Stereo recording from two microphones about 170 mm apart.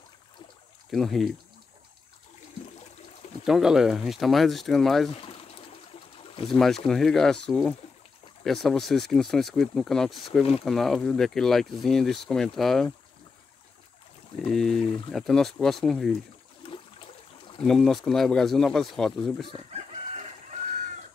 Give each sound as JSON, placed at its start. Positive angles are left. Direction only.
{"t": 0.9, "sound": "speech", "side_deg": 0}
{"t": 3.4, "sound": "speech", "side_deg": -5}
{"t": 5.1, "sound": "pour", "side_deg": 35}
{"t": 6.4, "sound": "speech", "side_deg": 0}
{"t": 14.4, "sound": "speech", "side_deg": 5}
{"t": 16.6, "sound": "water", "side_deg": 30}
{"t": 17.6, "sound": "speech", "side_deg": 0}